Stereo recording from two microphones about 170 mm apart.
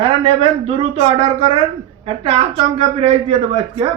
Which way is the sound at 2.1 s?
30° right (ahead or behind).